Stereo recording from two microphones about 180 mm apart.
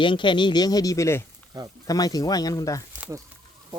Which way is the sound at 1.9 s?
20° left (ahead or behind).